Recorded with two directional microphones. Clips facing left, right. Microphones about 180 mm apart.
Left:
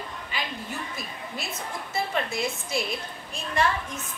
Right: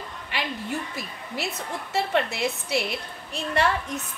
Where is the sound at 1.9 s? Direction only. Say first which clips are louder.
Right 4 dB; 70° right (ahead or behind).